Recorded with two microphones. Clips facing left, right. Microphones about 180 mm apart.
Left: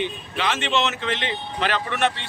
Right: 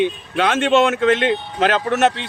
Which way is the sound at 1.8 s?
40° right (ahead or behind).